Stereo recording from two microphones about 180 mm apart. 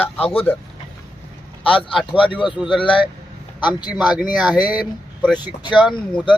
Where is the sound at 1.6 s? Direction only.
30° left (ahead or behind).